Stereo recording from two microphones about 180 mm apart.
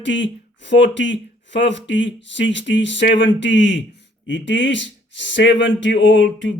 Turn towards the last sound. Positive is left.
turn(degrees=85)